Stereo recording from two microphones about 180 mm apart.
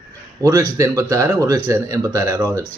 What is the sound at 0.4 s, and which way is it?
A man's voice, 20° right (ahead or behind).